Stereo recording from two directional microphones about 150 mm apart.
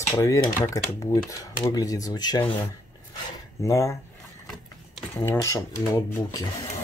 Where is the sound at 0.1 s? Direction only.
20° left (ahead or behind).